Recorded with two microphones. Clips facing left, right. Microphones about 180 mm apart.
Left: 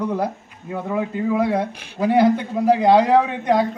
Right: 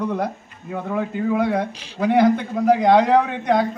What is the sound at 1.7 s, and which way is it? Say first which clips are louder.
Speech: even; 55° left (ahead or behind).